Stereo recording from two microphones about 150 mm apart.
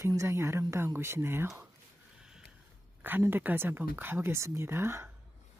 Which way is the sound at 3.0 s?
15° right (ahead or behind).